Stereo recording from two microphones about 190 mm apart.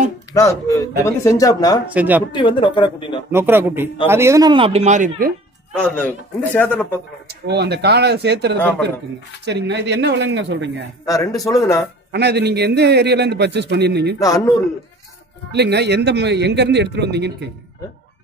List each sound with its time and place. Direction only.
0.3 s speech: 15° left (ahead or behind)
2.0 s a man's voice: 10° right (ahead or behind)
2.3 s speech: 25° left (ahead or behind)
3.3 s a man's voice: 10° right (ahead or behind); by 5.3 s 40° right (ahead or behind)
5.7 s speech: 5° left (ahead or behind)
7.2 s a man's voice: 60° right (ahead or behind)
11.1 s speech: 20° left (ahead or behind)
12.1 s a man's voice: 60° right (ahead or behind)
14.2 s speech: 20° left (ahead or behind)
15.5 s a man's voice: 60° right (ahead or behind)